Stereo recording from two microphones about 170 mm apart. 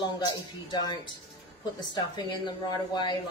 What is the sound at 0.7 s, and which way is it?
Speech, 25° left (ahead or behind).